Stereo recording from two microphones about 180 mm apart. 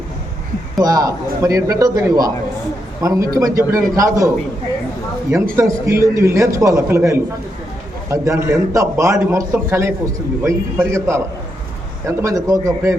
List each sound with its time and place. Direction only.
0.8 s a man's voice: 20° right (ahead or behind)
5.5 s a man's voice: 15° right (ahead or behind)